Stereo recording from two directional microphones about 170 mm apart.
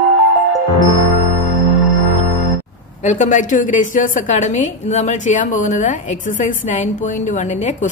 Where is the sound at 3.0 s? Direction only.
45° left (ahead or behind).